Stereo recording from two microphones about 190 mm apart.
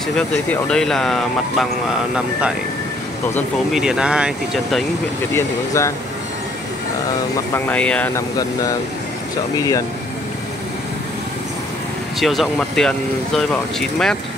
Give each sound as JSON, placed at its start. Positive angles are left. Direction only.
{"t": 0.5, "sound": "speech", "side_deg": 5}
{"t": 3.3, "sound": "speech", "side_deg": 0}
{"t": 5.3, "sound": "speech", "side_deg": 15}
{"t": 7.5, "sound": "speech", "side_deg": 10}
{"t": 9.6, "sound": "speech", "side_deg": 15}
{"t": 12.2, "sound": "speech", "side_deg": 0}